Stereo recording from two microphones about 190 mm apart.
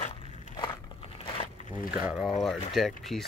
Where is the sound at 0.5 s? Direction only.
25° left (ahead or behind).